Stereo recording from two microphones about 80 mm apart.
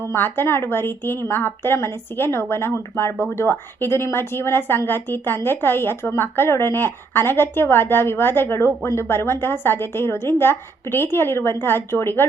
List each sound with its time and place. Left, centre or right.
0.1 s a woman's voice: left